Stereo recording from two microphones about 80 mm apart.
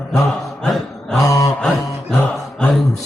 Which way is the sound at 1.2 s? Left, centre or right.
Left.